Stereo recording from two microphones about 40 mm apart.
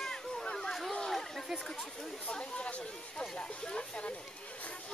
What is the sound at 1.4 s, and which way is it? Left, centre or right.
Chatter, centre.